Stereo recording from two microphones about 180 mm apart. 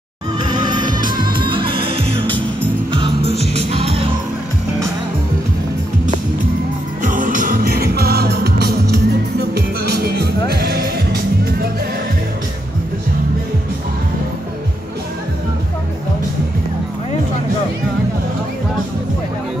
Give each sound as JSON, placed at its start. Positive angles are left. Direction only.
{"t": 0.4, "sound": "music", "side_deg": -25}
{"t": 2.2, "sound": "music", "side_deg": 10}
{"t": 2.9, "sound": "music", "side_deg": -30}
{"t": 7.0, "sound": "music", "side_deg": -45}